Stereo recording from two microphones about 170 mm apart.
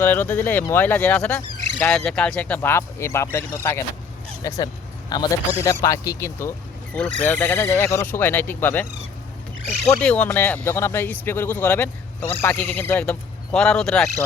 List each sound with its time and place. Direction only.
0.0 s speech: 10° left (ahead or behind)
9.9 s speech: 10° left (ahead or behind)